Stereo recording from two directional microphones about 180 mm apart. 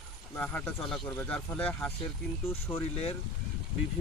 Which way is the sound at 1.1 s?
15° left (ahead or behind).